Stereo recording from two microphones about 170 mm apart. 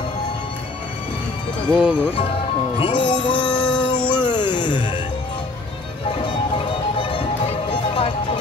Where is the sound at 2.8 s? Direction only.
30° left (ahead or behind).